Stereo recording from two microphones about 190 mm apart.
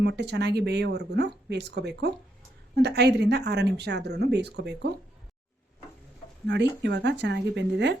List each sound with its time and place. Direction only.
0.0 s speech: 60° right (ahead or behind)
6.5 s speech: 65° right (ahead or behind)